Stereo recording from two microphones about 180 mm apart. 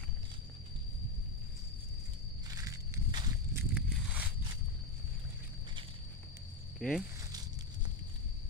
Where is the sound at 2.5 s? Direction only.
20° right (ahead or behind).